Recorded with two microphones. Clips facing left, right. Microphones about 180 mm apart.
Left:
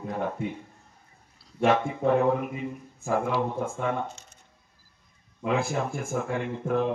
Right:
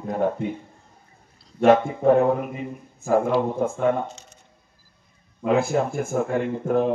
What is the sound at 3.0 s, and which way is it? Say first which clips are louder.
Speech: right 6 dB; 40° right (ahead or behind).